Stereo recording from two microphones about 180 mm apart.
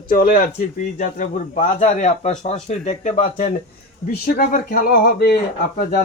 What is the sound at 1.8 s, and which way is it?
Speech, 40° left (ahead or behind).